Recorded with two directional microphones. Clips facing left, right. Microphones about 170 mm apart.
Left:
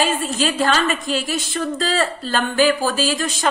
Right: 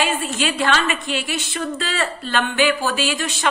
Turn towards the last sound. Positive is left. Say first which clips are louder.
# left 2 dB
turn(degrees=40)  # may be behind; listen again after turning